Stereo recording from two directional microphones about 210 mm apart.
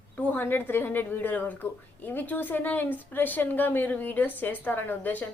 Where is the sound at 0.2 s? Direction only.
10° left (ahead or behind).